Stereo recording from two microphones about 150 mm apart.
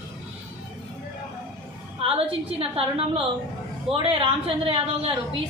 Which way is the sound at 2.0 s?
40° right (ahead or behind).